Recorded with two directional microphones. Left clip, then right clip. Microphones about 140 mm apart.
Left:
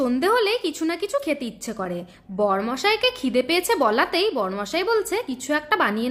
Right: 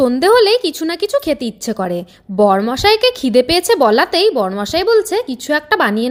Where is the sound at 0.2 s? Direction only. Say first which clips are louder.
Right 10 dB; 40° right (ahead or behind).